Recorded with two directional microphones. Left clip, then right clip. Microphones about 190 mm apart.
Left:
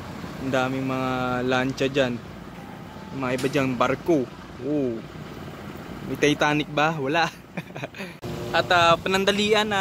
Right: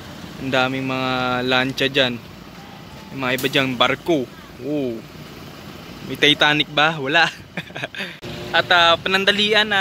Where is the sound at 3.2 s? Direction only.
10° right (ahead or behind).